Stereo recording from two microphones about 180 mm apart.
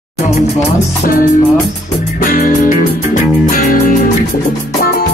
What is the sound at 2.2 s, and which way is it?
Music, 50° left (ahead or behind).